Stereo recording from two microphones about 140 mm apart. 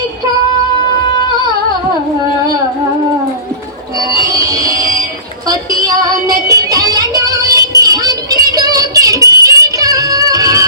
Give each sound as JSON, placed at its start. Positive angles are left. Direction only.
{"t": 4.1, "sound": "music", "side_deg": -25}
{"t": 5.8, "sound": "music", "side_deg": -25}